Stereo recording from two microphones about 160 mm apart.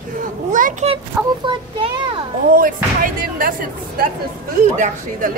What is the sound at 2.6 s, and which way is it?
Speech, 60° right (ahead or behind).